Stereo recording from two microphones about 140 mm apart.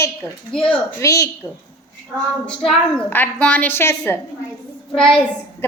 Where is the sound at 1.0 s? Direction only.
20° left (ahead or behind).